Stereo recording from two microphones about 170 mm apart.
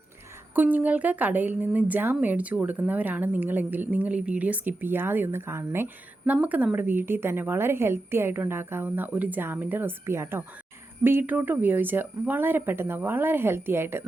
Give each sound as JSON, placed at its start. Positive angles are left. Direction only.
{"t": 0.5, "sound": "a woman's voice", "side_deg": -10}